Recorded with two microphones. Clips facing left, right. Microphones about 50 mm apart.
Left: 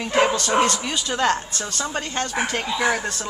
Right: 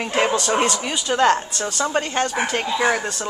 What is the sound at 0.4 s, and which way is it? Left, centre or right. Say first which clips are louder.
Speech: even; centre.